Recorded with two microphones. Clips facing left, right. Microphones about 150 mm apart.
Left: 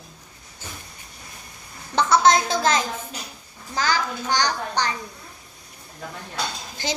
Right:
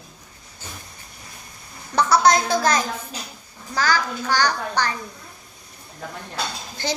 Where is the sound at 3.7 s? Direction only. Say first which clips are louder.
Right 2 dB; 20° left (ahead or behind).